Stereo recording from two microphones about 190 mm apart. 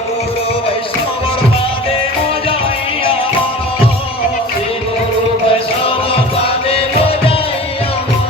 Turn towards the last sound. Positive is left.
turn(degrees=30)  # may be behind; listen again after turning